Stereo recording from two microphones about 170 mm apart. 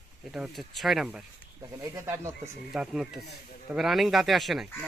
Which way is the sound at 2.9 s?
Centre (ahead or behind).